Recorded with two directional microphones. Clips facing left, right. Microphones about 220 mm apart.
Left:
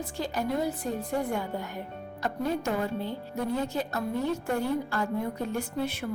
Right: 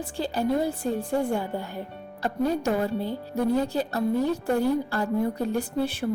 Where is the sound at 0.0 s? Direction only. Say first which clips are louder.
Right 4 dB; 30° right (ahead or behind).